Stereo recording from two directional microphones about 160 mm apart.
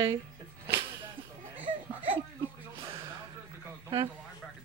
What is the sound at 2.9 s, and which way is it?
Gasp, 30° right (ahead or behind).